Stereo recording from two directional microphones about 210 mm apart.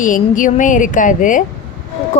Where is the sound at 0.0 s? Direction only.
40° left (ahead or behind).